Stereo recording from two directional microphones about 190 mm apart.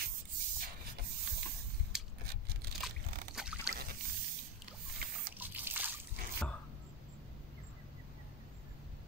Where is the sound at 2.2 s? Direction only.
55° right (ahead or behind).